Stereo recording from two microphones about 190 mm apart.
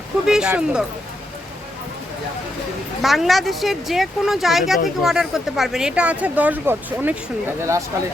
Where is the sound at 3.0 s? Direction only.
Centre (ahead or behind).